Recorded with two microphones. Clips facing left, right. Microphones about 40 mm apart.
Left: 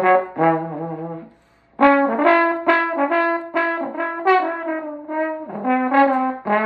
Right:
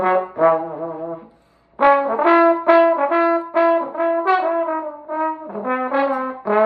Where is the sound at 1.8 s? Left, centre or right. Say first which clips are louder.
Even; left.